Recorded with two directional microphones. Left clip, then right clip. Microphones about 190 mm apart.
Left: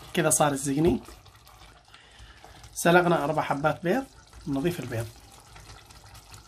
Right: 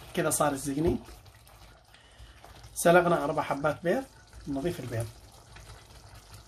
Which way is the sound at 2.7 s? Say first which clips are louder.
Left 1 dB; 15° left (ahead or behind).